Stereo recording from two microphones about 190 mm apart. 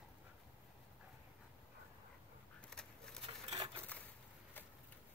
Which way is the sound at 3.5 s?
20° right (ahead or behind).